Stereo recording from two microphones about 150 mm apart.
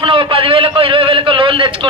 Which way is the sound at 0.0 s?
35° right (ahead or behind).